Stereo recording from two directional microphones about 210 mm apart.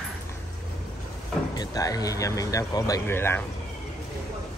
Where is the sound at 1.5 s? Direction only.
15° left (ahead or behind).